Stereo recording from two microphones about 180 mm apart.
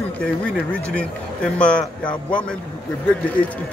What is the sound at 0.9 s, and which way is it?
Speech, 5° left (ahead or behind).